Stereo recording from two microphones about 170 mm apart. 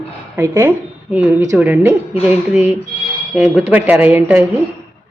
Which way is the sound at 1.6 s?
10° right (ahead or behind).